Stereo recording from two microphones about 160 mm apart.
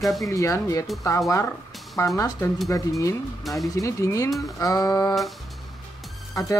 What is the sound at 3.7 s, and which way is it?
Speech, 20° left (ahead or behind).